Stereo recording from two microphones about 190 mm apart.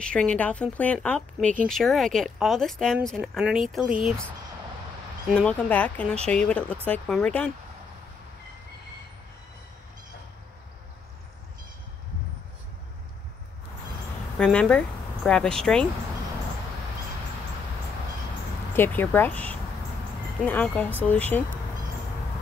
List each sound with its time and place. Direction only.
0.0 s speech: 5° left (ahead or behind)
5.3 s speech: 5° left (ahead or behind)
14.4 s speech: 5° left (ahead or behind)
18.8 s speech: 10° left (ahead or behind)